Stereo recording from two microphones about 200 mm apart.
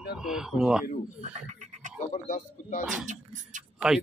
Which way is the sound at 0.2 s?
Centre (ahead or behind).